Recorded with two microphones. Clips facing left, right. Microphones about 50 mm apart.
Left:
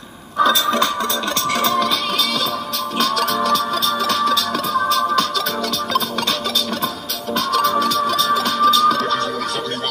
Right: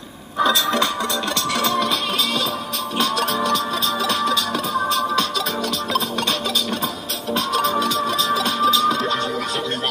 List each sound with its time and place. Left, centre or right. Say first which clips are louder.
0.4 s a sound: left 2 dB; right
1.7 s music: left 2 dB; right
3.0 s music: left 2 dB; right
7.3 s music: left 3 dB; right